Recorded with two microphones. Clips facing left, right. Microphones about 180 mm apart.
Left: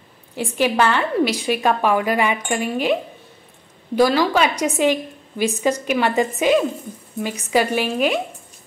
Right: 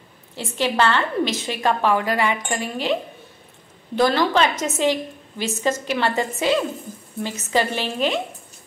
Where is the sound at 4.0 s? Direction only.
10° left (ahead or behind).